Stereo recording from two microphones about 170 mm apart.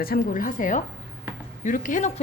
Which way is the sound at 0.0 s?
60° left (ahead or behind).